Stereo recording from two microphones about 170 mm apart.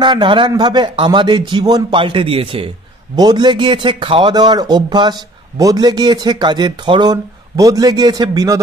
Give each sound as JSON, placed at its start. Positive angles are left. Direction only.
{"t": 0.0, "sound": "speech", "side_deg": -25}